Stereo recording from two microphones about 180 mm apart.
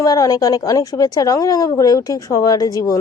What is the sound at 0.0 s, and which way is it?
A woman's voice, 20° left (ahead or behind).